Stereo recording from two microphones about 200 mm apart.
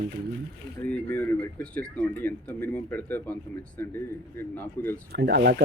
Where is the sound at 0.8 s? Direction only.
10° left (ahead or behind).